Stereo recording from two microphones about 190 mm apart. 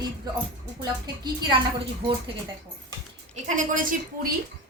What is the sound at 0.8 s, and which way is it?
Speech, 20° right (ahead or behind).